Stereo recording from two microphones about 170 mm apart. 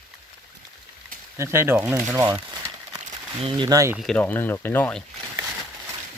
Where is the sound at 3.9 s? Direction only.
Centre (ahead or behind).